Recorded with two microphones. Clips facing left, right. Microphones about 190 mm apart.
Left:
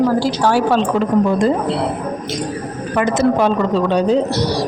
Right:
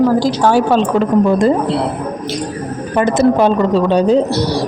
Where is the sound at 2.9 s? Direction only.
30° right (ahead or behind).